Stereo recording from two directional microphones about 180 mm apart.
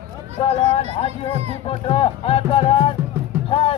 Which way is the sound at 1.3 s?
35° right (ahead or behind).